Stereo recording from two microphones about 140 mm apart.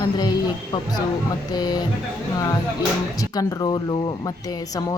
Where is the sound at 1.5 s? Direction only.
30° left (ahead or behind).